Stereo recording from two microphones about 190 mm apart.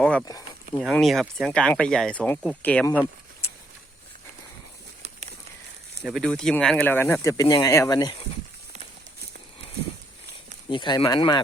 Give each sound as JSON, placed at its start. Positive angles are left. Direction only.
{"t": 0.0, "sound": "a sound", "side_deg": 5}
{"t": 0.8, "sound": "speech", "side_deg": 0}
{"t": 6.1, "sound": "speech", "side_deg": 5}
{"t": 10.7, "sound": "speech", "side_deg": 25}